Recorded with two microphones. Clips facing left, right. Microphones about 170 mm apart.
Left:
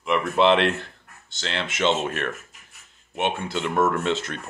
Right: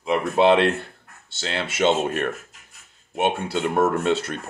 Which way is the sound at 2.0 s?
45° right (ahead or behind).